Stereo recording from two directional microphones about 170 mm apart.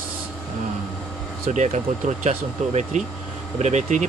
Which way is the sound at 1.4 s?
45° right (ahead or behind).